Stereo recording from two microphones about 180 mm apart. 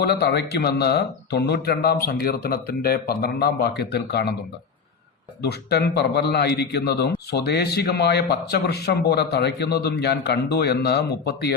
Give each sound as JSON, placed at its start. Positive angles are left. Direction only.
{"t": 0.0, "sound": "a man's voice", "side_deg": 65}
{"t": 5.4, "sound": "a man's voice", "side_deg": 65}